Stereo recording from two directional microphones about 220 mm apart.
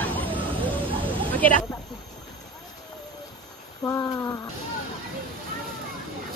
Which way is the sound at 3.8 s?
15° left (ahead or behind).